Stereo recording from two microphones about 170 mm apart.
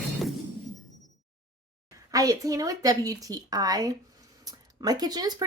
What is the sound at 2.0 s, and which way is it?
Speech, 20° right (ahead or behind).